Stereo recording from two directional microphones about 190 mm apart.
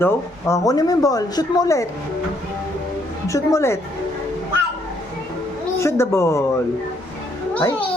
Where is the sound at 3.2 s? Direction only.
15° left (ahead or behind).